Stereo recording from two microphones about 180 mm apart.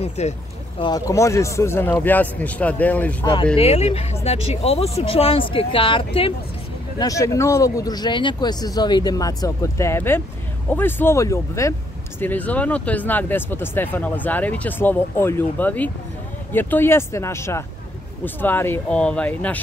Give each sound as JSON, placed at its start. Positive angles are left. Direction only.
{"t": 0.2, "sound": "speech", "side_deg": 35}
{"t": 0.7, "sound": "speech", "side_deg": 25}
{"t": 3.5, "sound": "speech", "side_deg": 35}
{"t": 7.0, "sound": "speech", "side_deg": 20}